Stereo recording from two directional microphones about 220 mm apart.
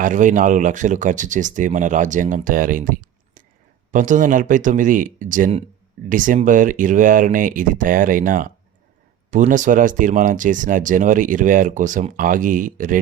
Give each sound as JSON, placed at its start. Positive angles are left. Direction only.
{"t": 0.0, "sound": "speech", "side_deg": -35}